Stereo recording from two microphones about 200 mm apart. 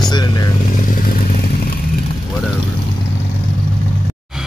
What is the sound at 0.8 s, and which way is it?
Motorcycle, 45° left (ahead or behind).